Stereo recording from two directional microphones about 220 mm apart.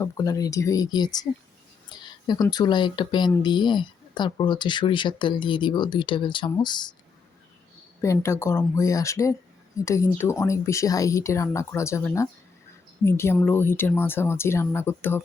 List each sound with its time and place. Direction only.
0.0 s speech: 15° left (ahead or behind)
8.0 s speech: 15° left (ahead or behind)